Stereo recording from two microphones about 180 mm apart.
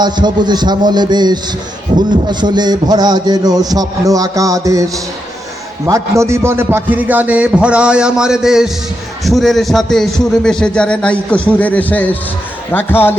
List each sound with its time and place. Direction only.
0.0 s a man's voice: 25° right (ahead or behind); by 13.1 s 10° left (ahead or behind)